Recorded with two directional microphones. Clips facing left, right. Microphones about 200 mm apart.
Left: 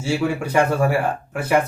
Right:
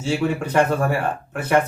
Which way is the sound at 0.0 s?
10° left (ahead or behind).